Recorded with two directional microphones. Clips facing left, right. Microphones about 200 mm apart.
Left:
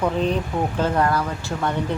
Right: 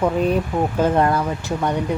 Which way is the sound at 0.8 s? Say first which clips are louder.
Right 3 dB; 20° right (ahead or behind).